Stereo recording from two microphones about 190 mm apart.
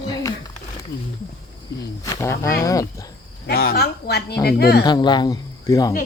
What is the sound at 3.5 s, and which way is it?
Speech, 55° left (ahead or behind).